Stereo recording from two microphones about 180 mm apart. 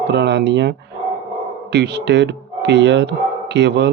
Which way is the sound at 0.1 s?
70° right (ahead or behind).